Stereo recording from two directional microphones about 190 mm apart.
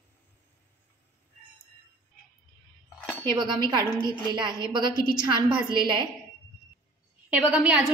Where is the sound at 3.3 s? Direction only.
25° right (ahead or behind).